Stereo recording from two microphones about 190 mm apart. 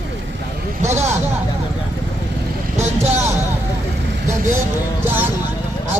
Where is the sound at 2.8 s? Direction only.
35° right (ahead or behind).